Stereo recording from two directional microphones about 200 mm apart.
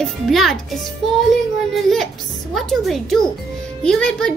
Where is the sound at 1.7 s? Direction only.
Centre (ahead or behind).